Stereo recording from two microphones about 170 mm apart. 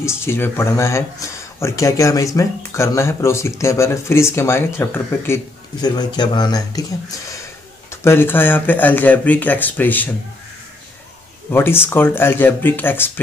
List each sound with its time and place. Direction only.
0.0 s speech: 15° left (ahead or behind)
11.5 s speech: 15° left (ahead or behind)